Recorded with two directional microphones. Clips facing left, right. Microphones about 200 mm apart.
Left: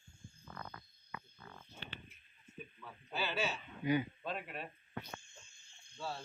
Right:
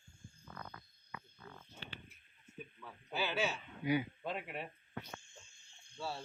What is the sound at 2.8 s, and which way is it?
A man's voice, 10° right (ahead or behind).